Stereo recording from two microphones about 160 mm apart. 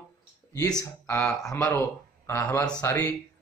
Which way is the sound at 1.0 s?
15° left (ahead or behind).